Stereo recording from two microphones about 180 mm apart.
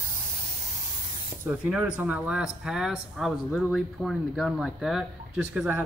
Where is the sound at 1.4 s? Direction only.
5° right (ahead or behind).